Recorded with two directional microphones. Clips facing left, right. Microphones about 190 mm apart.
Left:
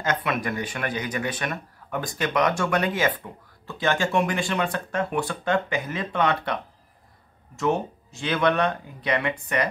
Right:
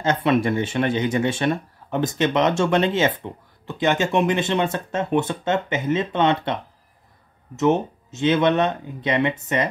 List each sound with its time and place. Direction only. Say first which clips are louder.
0.0 s speech: right 7 dB; 25° right (ahead or behind)